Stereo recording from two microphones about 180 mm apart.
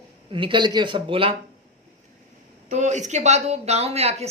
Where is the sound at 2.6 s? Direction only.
40° right (ahead or behind).